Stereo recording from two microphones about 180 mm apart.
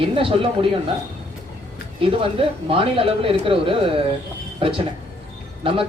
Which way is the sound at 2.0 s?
30° right (ahead or behind).